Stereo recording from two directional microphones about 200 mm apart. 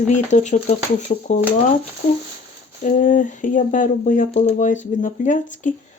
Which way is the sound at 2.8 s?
40° left (ahead or behind).